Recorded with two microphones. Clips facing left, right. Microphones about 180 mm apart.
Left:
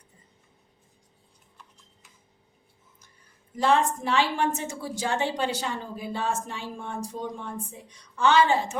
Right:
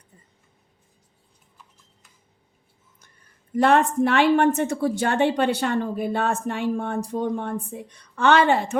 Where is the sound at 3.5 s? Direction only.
60° right (ahead or behind).